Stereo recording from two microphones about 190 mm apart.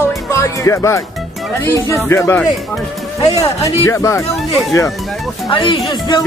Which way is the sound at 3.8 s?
15° left (ahead or behind).